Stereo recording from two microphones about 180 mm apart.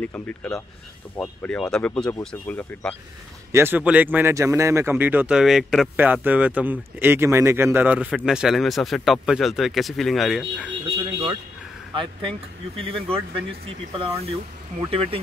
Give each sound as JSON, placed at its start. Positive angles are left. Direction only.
{"t": 0.0, "sound": "speech", "side_deg": 10}
{"t": 3.5, "sound": "speech", "side_deg": -10}
{"t": 11.0, "sound": "vehicle", "side_deg": -30}
{"t": 11.9, "sound": "speech", "side_deg": -30}